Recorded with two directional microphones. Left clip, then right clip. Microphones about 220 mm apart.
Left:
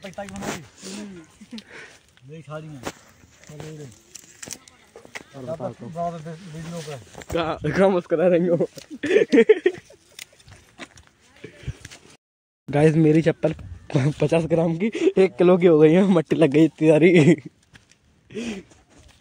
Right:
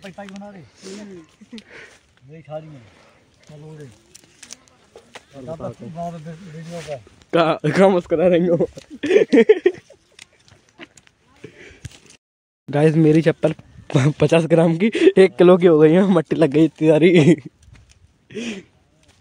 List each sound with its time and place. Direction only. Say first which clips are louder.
0.3 s speech: left 6 dB; 5° left (ahead or behind)
2.3 s speech: right 4 dB; 50° left (ahead or behind)
7.3 s speech: right 6 dB; 45° right (ahead or behind); by 9.8 s 25° right (ahead or behind)
10.2 s a sound: left 4 dB; 50° left (ahead or behind)
12.6 s speech: right 2 dB; centre (ahead or behind)